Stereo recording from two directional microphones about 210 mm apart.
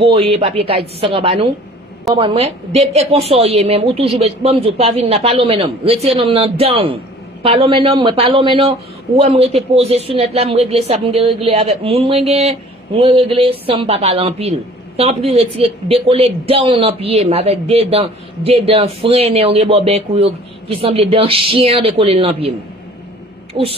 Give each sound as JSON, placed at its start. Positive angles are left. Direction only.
{"t": 0.0, "sound": "speech", "side_deg": -25}
{"t": 23.6, "sound": "speech", "side_deg": -25}